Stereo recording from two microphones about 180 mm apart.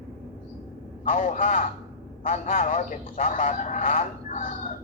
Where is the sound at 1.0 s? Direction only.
45° left (ahead or behind).